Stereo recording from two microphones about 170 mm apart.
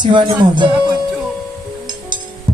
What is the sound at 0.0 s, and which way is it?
Music, 30° right (ahead or behind).